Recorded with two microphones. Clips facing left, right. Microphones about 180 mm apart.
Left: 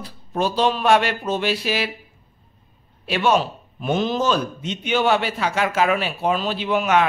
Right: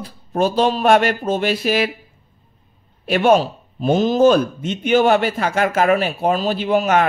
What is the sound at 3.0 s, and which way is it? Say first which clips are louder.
Speech: right 5 dB; 50° right (ahead or behind).